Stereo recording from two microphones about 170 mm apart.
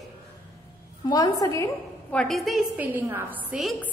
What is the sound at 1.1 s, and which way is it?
Speech, 20° left (ahead or behind).